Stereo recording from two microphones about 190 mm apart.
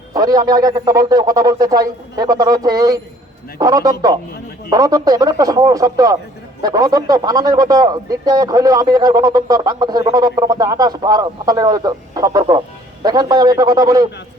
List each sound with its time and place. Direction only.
0.1 s a man's voice: 20° right (ahead or behind)